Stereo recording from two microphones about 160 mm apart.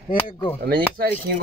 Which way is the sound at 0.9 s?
70° right (ahead or behind).